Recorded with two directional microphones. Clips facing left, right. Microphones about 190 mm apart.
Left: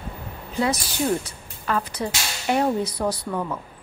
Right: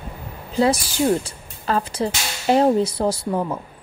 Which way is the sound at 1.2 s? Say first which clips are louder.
Right 3 dB; 30° right (ahead or behind).